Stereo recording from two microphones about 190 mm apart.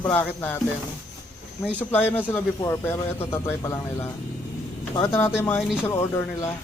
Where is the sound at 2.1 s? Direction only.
10° left (ahead or behind).